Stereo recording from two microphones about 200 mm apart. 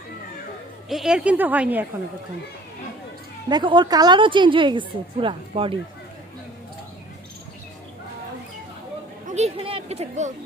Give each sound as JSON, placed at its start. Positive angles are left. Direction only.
{"t": 0.9, "sound": "a woman's voice", "side_deg": 0}
{"t": 3.5, "sound": "a woman's voice", "side_deg": -25}
{"t": 9.2, "sound": "speech", "side_deg": -35}